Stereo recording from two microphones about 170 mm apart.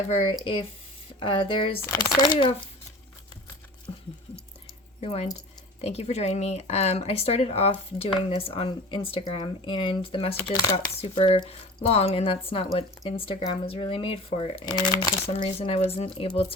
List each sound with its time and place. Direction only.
0.1 s speech: 35° left (ahead or behind)
1.8 s speech: 20° left (ahead or behind)
4.9 s speech: 40° left (ahead or behind); by 10.9 s 25° left (ahead or behind)
11.0 s speech: 35° left (ahead or behind)
14.6 s speech: 20° left (ahead or behind)
15.5 s speech: 35° left (ahead or behind)